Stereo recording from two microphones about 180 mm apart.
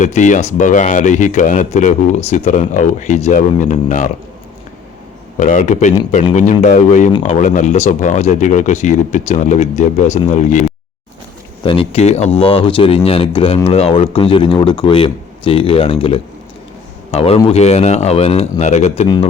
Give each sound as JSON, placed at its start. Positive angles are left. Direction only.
{"t": 0.0, "sound": "speech", "side_deg": 45}
{"t": 5.4, "sound": "speech", "side_deg": 45}
{"t": 11.6, "sound": "speech", "side_deg": 30}
{"t": 19.0, "sound": "speech", "side_deg": 25}